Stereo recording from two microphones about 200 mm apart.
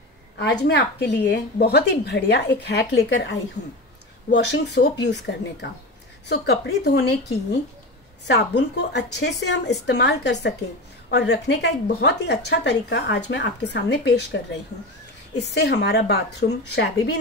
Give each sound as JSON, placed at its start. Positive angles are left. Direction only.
{"t": 0.4, "sound": "a woman's voice", "side_deg": 60}
{"t": 8.3, "sound": "a woman's voice", "side_deg": 60}